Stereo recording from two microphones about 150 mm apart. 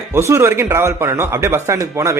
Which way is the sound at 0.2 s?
15° right (ahead or behind).